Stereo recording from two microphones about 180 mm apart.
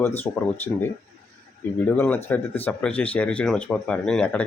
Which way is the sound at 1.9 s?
10° left (ahead or behind).